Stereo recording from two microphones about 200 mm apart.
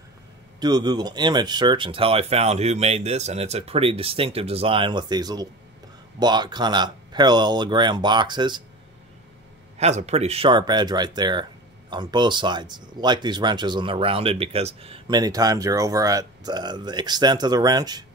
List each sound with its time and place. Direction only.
0.6 s speech: 20° right (ahead or behind)
9.8 s speech: 35° right (ahead or behind)